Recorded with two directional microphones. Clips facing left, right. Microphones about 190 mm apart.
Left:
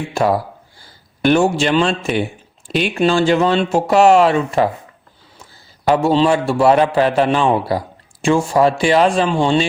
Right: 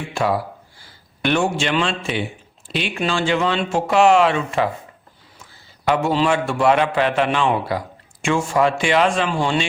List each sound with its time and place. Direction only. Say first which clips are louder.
0.1 s a man's voice: left 4 dB; 40° left (ahead or behind)
5.8 s a man's voice: left 5 dB; 35° left (ahead or behind)